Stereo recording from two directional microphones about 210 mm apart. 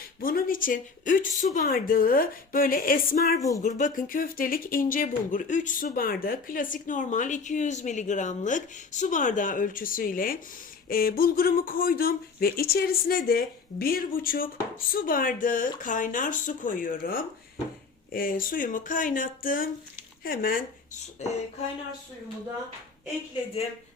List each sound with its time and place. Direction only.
0.2 s speech: 45° left (ahead or behind)